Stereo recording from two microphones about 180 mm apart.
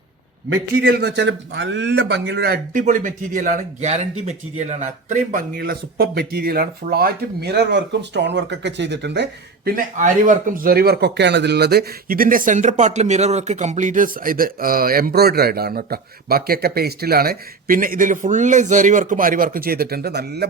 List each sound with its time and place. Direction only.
0.5 s a man's voice: 75° right (ahead or behind); by 2.8 s 60° right (ahead or behind)
2.8 s speech: 45° right (ahead or behind); by 20.5 s 65° right (ahead or behind)